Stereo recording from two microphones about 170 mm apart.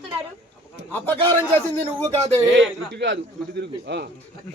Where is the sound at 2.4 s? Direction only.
90° right.